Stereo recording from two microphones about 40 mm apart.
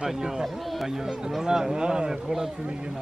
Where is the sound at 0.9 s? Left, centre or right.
Centre.